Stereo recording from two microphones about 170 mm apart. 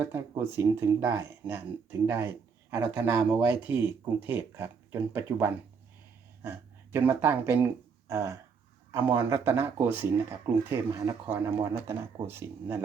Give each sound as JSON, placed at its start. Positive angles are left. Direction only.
{"t": 0.0, "sound": "speech", "side_deg": -15}